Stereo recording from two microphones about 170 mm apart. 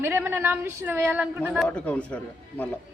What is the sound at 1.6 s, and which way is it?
Speech, 5° left (ahead or behind).